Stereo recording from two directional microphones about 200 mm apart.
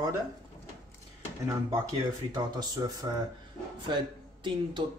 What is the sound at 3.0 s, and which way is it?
Speech, 20° right (ahead or behind).